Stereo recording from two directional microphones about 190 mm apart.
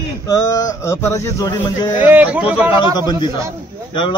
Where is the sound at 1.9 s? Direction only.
10° right (ahead or behind).